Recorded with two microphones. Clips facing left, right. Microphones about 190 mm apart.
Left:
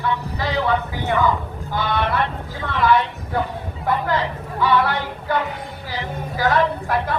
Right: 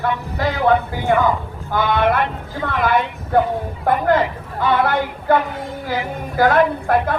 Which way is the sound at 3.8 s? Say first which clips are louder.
Right 5 dB; 50° right (ahead or behind).